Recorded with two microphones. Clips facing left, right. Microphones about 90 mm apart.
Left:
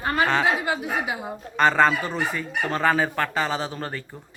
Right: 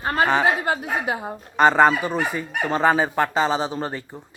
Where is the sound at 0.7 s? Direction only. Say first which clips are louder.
Right 2 dB; 45° right (ahead or behind).